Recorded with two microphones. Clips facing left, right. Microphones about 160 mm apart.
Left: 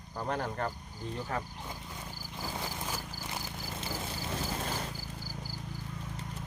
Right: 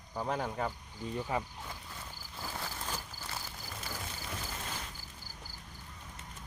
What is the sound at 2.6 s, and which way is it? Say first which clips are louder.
Horse: left 1 dB; 15° left (ahead or behind).